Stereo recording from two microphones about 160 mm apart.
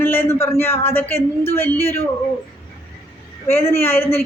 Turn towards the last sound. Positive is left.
turn(degrees=15)  # may be behind; listen again after turning